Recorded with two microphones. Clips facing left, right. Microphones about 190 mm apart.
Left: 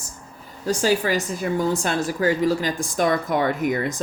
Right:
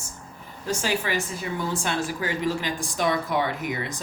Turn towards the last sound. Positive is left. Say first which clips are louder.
# left 7 dB
turn(degrees=45)  # may be behind; listen again after turning